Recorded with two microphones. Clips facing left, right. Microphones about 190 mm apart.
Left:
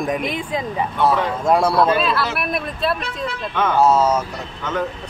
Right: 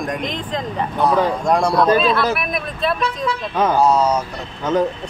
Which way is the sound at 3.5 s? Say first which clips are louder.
Right 2 dB; 35° right (ahead or behind).